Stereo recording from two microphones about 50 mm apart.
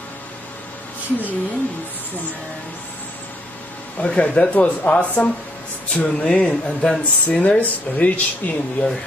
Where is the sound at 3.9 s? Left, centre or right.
Centre.